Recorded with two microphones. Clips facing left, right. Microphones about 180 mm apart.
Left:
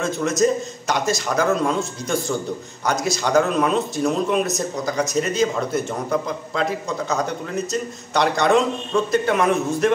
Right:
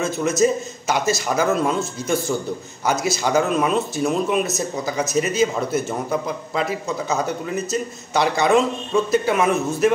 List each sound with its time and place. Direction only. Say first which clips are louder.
0.0 s speech: right 1 dB; 5° right (ahead or behind)